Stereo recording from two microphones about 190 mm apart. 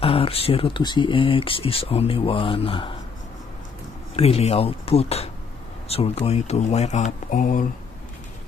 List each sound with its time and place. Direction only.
0.0 s speech: 30° left (ahead or behind)
4.2 s speech: 30° left (ahead or behind)